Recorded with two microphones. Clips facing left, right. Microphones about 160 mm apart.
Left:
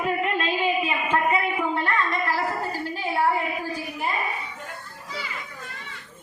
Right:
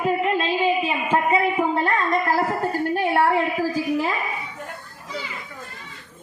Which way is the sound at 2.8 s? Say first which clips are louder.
Right 4 dB; 60° right (ahead or behind).